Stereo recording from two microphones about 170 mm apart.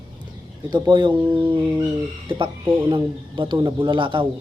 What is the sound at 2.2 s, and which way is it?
Speech, 30° right (ahead or behind).